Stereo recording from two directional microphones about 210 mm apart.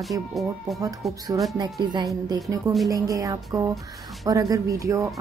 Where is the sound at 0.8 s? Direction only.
15° right (ahead or behind).